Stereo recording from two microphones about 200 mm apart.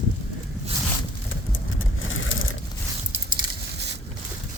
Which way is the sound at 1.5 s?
85° left.